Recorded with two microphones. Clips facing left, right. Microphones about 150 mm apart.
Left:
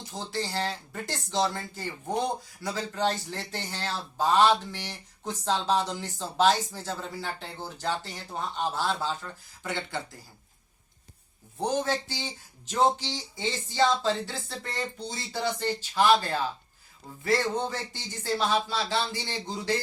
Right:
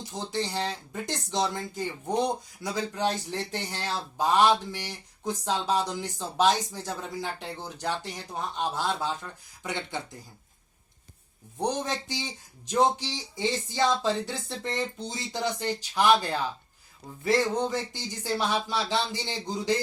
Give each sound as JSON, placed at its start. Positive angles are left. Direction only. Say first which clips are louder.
{"t": 0.1, "sound": "speech", "louder": "right 1 dB", "side_deg": -20}
{"t": 11.6, "sound": "speech", "louder": "left 2 dB", "side_deg": -15}
{"t": 17.2, "sound": "speech", "louder": "right 2 dB", "side_deg": -15}